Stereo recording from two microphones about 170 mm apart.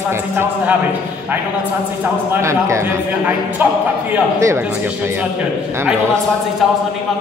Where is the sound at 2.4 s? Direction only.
15° right (ahead or behind).